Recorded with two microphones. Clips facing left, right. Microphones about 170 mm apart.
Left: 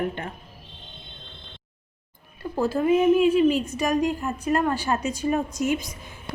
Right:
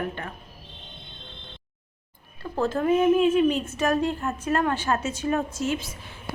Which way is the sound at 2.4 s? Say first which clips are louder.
Left 1 dB; 10° left (ahead or behind).